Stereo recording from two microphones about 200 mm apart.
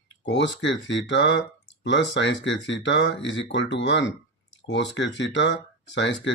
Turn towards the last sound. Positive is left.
turn(degrees=65)  # may be behind; listen again after turning